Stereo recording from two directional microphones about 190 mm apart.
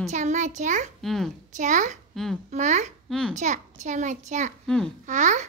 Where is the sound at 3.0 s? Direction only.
5° left (ahead or behind).